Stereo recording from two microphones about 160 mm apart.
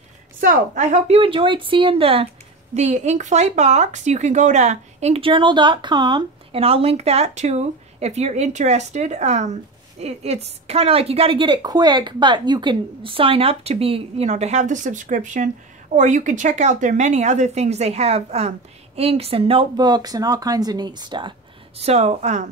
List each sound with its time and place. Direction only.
0.4 s speech: 55° right (ahead or behind)